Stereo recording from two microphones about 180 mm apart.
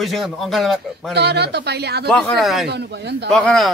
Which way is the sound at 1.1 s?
70° right (ahead or behind).